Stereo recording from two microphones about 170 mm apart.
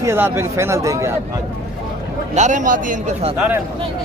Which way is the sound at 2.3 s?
45° right (ahead or behind).